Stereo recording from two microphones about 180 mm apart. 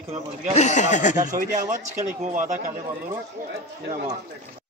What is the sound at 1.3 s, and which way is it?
Speech, 45° right (ahead or behind).